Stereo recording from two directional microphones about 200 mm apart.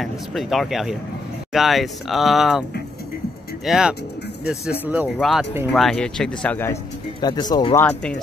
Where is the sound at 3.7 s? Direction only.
5° right (ahead or behind).